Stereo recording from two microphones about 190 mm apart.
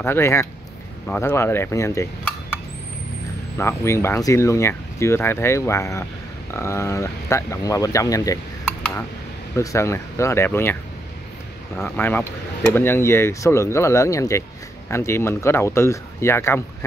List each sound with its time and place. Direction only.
0.0 s speech: 15° left (ahead or behind)
3.5 s speech: 15° left (ahead or behind)
9.6 s speech: 15° left (ahead or behind)